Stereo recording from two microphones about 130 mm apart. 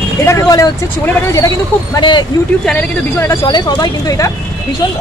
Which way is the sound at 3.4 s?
35° left (ahead or behind).